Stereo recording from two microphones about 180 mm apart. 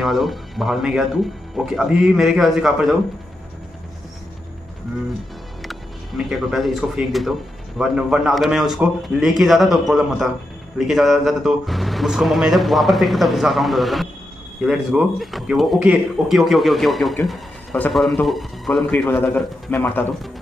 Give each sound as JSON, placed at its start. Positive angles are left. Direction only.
{"t": 0.0, "sound": "speech", "side_deg": 0}
{"t": 5.6, "sound": "speech", "side_deg": 0}